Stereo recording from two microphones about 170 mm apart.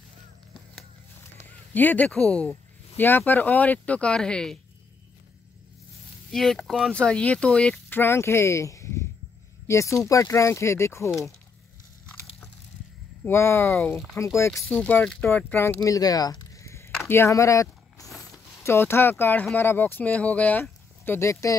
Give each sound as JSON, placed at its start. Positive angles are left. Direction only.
{"t": 1.4, "sound": "speech", "side_deg": 10}
{"t": 6.3, "sound": "speech", "side_deg": 0}
{"t": 13.2, "sound": "speech", "side_deg": 15}
{"t": 14.5, "sound": "speech", "side_deg": 0}